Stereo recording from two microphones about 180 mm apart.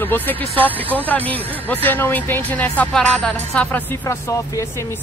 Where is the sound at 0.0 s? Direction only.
10° left (ahead or behind).